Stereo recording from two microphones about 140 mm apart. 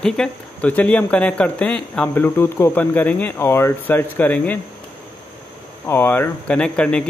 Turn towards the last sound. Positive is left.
turn(degrees=10)  # may be behind; listen again after turning